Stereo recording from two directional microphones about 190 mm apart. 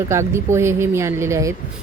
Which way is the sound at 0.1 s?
15° right (ahead or behind).